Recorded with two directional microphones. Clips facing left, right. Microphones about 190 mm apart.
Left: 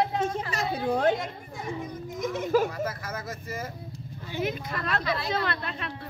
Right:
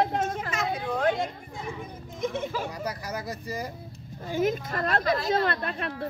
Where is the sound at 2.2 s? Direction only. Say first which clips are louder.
Right 1 dB; 25° right (ahead or behind).